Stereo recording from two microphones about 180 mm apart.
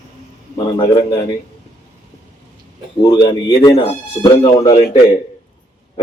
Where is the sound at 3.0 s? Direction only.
25° left (ahead or behind).